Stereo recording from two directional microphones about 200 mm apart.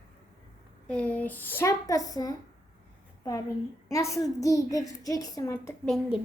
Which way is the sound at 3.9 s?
15° left (ahead or behind).